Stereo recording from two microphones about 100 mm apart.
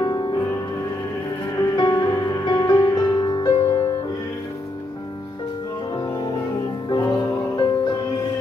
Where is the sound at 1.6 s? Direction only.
45° left (ahead or behind).